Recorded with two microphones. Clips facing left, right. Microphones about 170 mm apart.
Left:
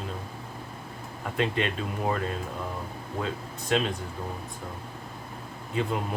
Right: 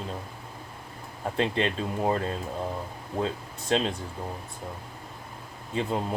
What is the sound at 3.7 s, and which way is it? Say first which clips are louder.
Speech: right 1 dB; 30° right (ahead or behind).